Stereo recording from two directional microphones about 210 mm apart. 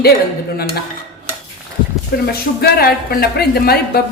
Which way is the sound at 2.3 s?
50° left (ahead or behind).